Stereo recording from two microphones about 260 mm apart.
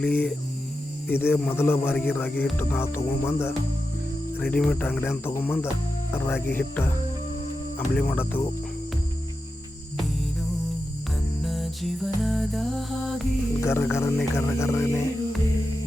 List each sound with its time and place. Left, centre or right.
0.0 s a sound: centre
1.0 s a man's voice: centre
7.9 s a man's voice: centre
11.4 s music: centre